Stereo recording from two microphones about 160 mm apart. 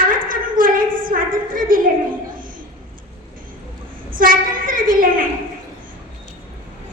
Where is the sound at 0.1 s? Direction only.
60° right (ahead or behind).